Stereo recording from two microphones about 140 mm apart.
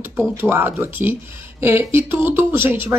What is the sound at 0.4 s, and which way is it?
Speech, 15° right (ahead or behind).